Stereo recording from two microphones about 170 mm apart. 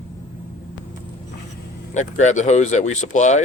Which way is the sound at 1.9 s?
45° left (ahead or behind).